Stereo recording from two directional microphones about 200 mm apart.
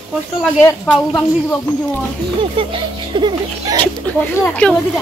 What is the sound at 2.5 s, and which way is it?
Speech, 25° right (ahead or behind).